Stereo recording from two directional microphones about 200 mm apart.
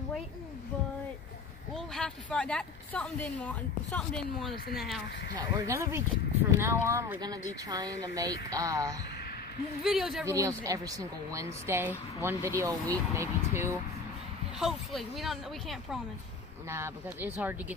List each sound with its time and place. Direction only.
1.7 s speech: centre (ahead or behind)
5.3 s a woman's voice: 20° right (ahead or behind)
9.8 s speech: centre (ahead or behind)
10.2 s a woman's voice: 15° right (ahead or behind)
14.6 s speech: centre (ahead or behind)
16.6 s a woman's voice: 15° right (ahead or behind)